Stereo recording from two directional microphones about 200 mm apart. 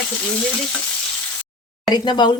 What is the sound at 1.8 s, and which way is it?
Speech, 20° left (ahead or behind).